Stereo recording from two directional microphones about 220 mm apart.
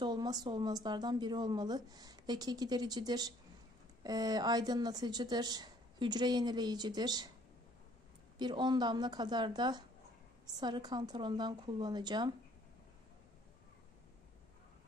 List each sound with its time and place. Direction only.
0.0 s a woman's voice: 20° right (ahead or behind)
8.4 s a woman's voice: 20° right (ahead or behind)